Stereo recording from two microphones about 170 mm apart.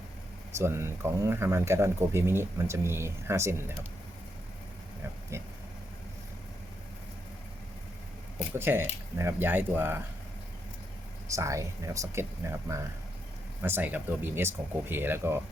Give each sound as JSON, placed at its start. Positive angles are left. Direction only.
{"t": 0.5, "sound": "speech", "side_deg": -15}
{"t": 5.3, "sound": "speech", "side_deg": -15}
{"t": 8.5, "sound": "speech", "side_deg": -15}
{"t": 11.3, "sound": "speech", "side_deg": -20}